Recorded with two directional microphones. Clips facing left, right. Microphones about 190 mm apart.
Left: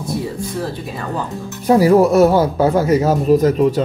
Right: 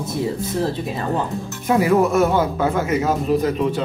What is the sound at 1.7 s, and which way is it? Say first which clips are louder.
Speech: left 5 dB; 35° left (ahead or behind).